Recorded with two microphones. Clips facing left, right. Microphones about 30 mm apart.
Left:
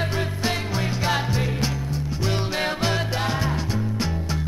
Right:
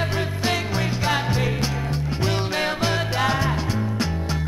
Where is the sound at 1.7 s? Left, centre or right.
Right.